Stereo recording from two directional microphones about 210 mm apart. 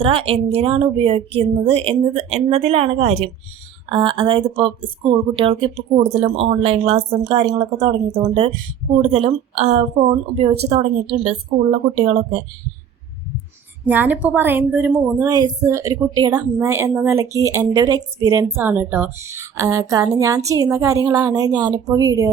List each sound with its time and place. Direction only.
0.0 s speech: 25° right (ahead or behind)
13.8 s a woman's voice: 10° right (ahead or behind)